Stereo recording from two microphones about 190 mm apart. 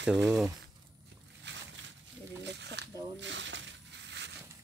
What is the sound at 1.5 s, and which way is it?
Slosh, 65° right (ahead or behind).